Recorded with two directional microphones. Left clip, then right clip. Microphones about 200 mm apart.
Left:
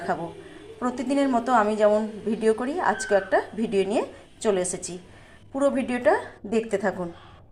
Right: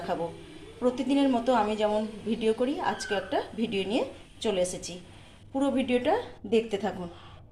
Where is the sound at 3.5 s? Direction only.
Centre (ahead or behind).